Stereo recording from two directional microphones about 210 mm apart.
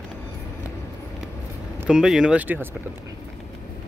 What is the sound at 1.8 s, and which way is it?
Speech, 5° right (ahead or behind).